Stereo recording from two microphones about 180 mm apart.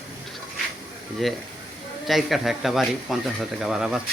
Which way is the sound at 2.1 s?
Centre (ahead or behind).